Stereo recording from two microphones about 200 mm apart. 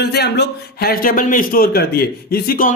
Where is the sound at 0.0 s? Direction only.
55° left (ahead or behind).